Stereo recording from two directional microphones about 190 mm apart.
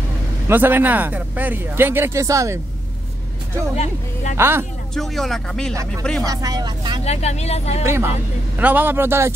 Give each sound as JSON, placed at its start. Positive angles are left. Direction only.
{"t": 0.5, "sound": "speech", "side_deg": -10}
{"t": 3.7, "sound": "speech", "side_deg": 35}
{"t": 4.4, "sound": "speech", "side_deg": -10}
{"t": 4.9, "sound": "speech", "side_deg": 0}
{"t": 6.2, "sound": "speech", "side_deg": -20}
{"t": 7.1, "sound": "speech", "side_deg": 35}
{"t": 7.8, "sound": "speech", "side_deg": -15}